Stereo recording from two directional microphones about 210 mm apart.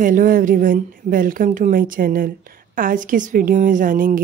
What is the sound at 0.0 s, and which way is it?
A woman's voice, 40° right (ahead or behind).